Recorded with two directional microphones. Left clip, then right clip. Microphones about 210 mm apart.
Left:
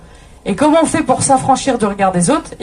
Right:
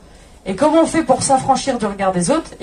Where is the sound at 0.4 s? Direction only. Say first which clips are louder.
Left 2 dB; 40° left (ahead or behind).